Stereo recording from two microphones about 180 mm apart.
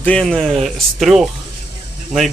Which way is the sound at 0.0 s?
5° left (ahead or behind).